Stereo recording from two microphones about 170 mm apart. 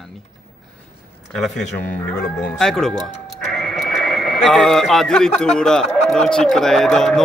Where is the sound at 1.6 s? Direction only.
45° left (ahead or behind).